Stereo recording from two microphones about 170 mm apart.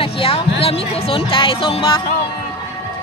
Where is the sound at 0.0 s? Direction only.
35° left (ahead or behind).